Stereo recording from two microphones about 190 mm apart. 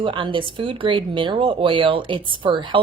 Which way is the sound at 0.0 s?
25° right (ahead or behind).